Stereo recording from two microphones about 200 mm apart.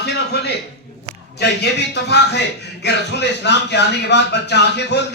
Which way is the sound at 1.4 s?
55° left (ahead or behind).